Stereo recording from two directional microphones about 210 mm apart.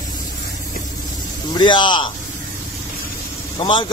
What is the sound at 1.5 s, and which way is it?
Speech, 20° left (ahead or behind).